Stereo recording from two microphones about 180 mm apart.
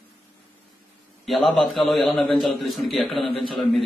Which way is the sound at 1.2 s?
Centre (ahead or behind).